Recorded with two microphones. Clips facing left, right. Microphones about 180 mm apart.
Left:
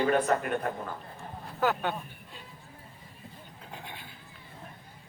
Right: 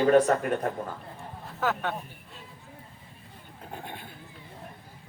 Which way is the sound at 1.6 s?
Centre (ahead or behind).